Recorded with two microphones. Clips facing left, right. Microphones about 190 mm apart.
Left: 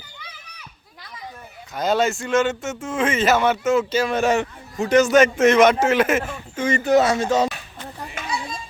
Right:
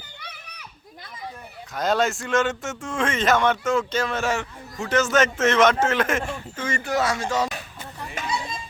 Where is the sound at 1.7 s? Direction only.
Centre (ahead or behind).